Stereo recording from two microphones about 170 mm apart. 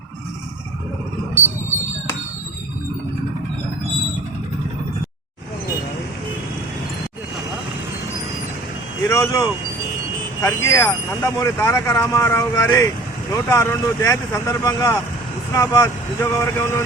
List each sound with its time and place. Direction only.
9.0 s speech: 20° left (ahead or behind)